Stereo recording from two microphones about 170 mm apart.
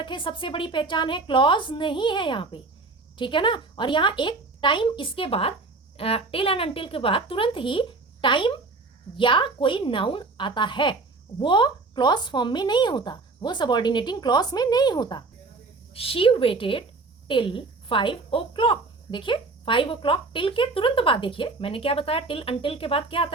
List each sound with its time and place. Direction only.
0.0 s speech: 30° left (ahead or behind)